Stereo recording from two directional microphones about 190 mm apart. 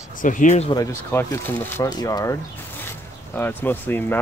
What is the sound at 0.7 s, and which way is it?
Speech, 15° left (ahead or behind).